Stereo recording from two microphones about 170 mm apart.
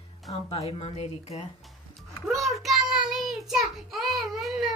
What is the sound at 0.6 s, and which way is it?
Speech, 40° left (ahead or behind).